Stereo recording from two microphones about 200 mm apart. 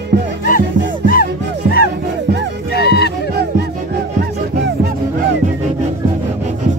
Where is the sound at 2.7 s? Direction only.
55° left (ahead or behind).